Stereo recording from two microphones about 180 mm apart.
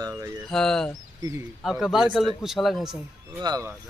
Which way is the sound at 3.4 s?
20° right (ahead or behind).